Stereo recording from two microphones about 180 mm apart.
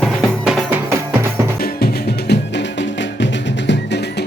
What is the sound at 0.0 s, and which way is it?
Music, 5° right (ahead or behind).